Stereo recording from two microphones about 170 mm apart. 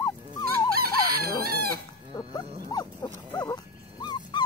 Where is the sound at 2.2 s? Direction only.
25° left (ahead or behind).